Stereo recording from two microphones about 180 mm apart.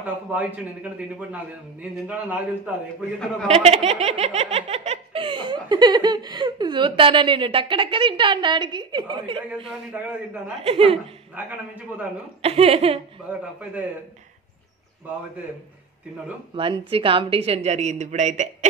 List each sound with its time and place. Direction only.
0.0 s a man's voice: 10° right (ahead or behind)
3.4 s laughter: 35° right (ahead or behind)
9.7 s a man's voice: 10° right (ahead or behind)
10.6 s speech: 30° right (ahead or behind)
11.4 s a man's voice: 10° right (ahead or behind)
12.4 s speech: 35° right (ahead or behind)
13.3 s a man's voice: 10° right (ahead or behind)
16.5 s speech: 30° right (ahead or behind)